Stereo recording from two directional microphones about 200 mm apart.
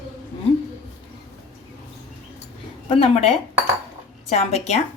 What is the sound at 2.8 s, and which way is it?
A woman's voice, 30° left (ahead or behind).